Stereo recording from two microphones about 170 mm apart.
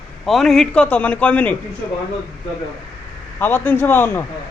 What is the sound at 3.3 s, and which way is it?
Speech, 10° left (ahead or behind).